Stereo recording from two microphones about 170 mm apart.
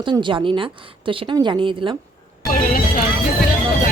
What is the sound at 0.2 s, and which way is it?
Speech, 30° right (ahead or behind).